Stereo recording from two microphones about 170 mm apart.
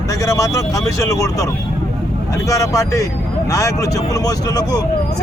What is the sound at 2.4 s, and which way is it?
Speech, 20° left (ahead or behind).